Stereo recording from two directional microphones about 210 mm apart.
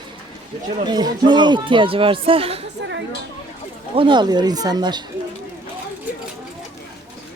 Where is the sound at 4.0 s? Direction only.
20° right (ahead or behind).